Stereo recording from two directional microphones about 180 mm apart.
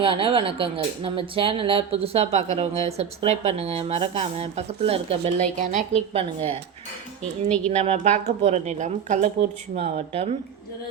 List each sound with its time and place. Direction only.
0.0 s speech: 30° right (ahead or behind)
7.7 s speech: 35° right (ahead or behind)